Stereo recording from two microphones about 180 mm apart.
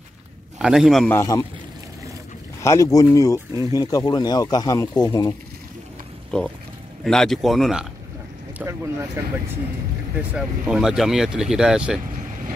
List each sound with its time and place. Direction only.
0.6 s speech: 5° right (ahead or behind)
1.1 s speech: 20° left (ahead or behind)
2.6 s speech: 20° left (ahead or behind)
6.3 s speech: 5° left (ahead or behind)
8.5 s speech: 15° right (ahead or behind)
10.1 s speech: 5° right (ahead or behind)